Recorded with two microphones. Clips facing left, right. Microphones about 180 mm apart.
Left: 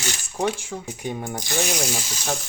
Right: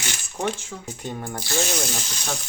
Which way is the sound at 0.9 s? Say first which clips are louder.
Left 1 dB; 10° left (ahead or behind).